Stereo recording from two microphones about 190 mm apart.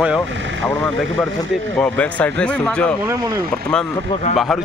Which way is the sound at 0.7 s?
5° left (ahead or behind).